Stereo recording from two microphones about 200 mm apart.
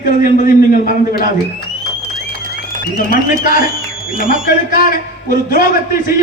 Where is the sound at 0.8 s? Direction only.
45° left (ahead or behind).